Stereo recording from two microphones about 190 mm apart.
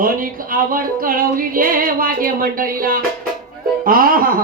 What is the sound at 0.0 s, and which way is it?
Music, 45° right (ahead or behind).